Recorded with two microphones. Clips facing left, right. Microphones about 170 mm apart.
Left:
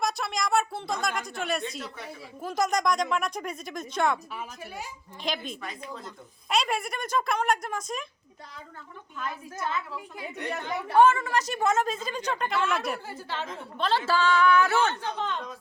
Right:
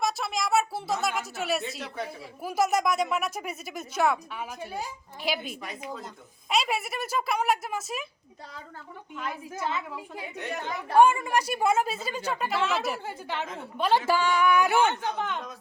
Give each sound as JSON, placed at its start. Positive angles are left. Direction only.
{"t": 0.0, "sound": "a woman's voice", "side_deg": 0}
{"t": 5.2, "sound": "a woman's voice", "side_deg": -5}
{"t": 9.1, "sound": "a woman's voice", "side_deg": -20}
{"t": 13.1, "sound": "a woman's voice", "side_deg": -15}